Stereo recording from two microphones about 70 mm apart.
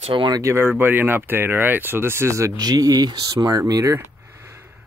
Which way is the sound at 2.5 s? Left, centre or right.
Right.